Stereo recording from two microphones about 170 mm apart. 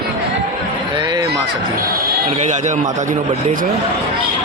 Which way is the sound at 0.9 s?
25° right (ahead or behind).